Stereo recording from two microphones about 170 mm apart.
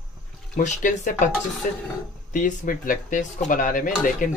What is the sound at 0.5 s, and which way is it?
Speech, 50° left (ahead or behind).